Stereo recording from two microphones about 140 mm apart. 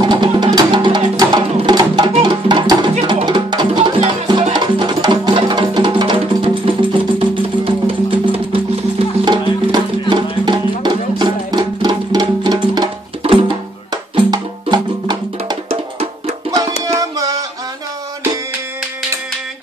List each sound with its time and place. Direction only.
0.0 s music: 35° right (ahead or behind)
13.2 s music: 45° right (ahead or behind)
14.1 s music: 30° right (ahead or behind)
15.7 s music: 45° right (ahead or behind)
16.5 s music: 25° right (ahead or behind)